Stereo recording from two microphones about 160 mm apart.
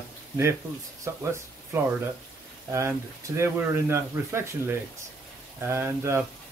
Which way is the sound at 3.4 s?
15° right (ahead or behind).